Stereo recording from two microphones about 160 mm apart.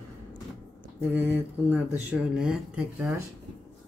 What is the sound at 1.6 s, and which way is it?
Speech, 5° right (ahead or behind).